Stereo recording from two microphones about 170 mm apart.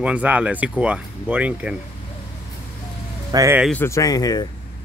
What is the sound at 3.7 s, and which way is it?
Speech, 15° left (ahead or behind).